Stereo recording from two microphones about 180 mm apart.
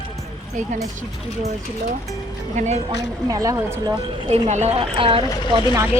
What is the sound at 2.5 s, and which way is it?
Speech, 40° right (ahead or behind).